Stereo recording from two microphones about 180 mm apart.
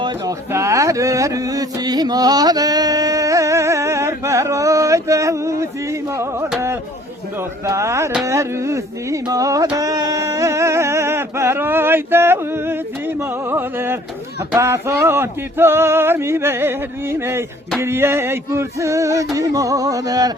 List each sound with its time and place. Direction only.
0.0 s a sound: 15° right (ahead or behind)
7.6 s male singing: 15° right (ahead or behind)
8.2 s music: 15° right (ahead or behind)
14.5 s male singing: 15° right (ahead or behind)